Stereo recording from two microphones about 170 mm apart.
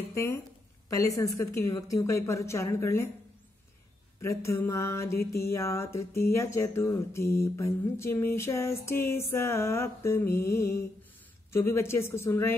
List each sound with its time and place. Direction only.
0.1 s a woman's voice: 15° left (ahead or behind)
4.2 s speech: 15° left (ahead or behind)